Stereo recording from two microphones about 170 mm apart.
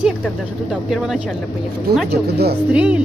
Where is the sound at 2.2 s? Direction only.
70° right (ahead or behind).